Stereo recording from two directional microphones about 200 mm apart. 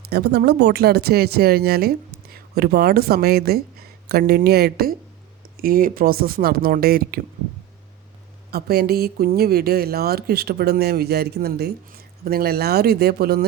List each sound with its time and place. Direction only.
0.1 s speech: 55° right (ahead or behind)
8.4 s speech: 50° right (ahead or behind)